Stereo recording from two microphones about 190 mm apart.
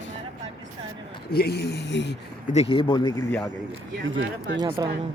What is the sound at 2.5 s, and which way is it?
Speech, 30° left (ahead or behind).